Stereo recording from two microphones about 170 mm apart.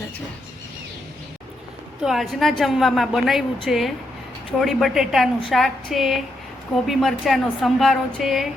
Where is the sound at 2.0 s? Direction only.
Centre (ahead or behind).